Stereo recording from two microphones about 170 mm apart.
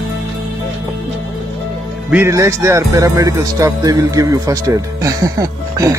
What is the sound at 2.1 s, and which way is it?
Speech, 15° right (ahead or behind).